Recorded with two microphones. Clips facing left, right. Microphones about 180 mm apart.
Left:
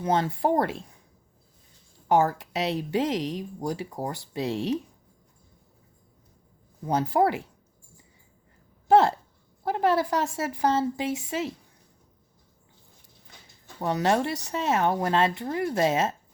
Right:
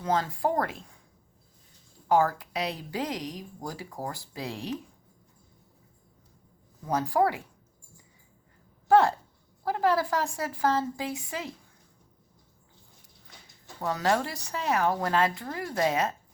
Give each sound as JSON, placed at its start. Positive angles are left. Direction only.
{"t": 0.0, "sound": "a woman's voice", "side_deg": 25}
{"t": 2.0, "sound": "a woman's voice", "side_deg": 25}
{"t": 6.8, "sound": "a woman's voice", "side_deg": 20}
{"t": 8.9, "sound": "a woman's voice", "side_deg": 25}
{"t": 13.7, "sound": "a woman's voice", "side_deg": 20}